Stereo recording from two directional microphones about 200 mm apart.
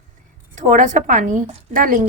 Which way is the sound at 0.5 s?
40° right (ahead or behind).